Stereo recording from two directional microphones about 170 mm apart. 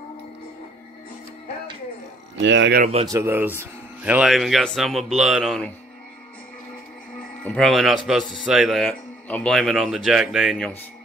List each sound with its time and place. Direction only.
2.4 s speech: 90° right
3.1 s a man's voice: 15° right (ahead or behind); by 5.7 s centre (ahead or behind)
7.4 s a man's voice: 5° left (ahead or behind)